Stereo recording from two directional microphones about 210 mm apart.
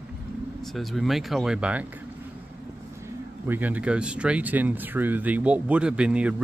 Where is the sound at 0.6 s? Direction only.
Centre (ahead or behind).